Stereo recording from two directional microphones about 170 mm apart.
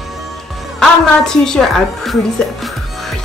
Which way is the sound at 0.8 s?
5° left (ahead or behind).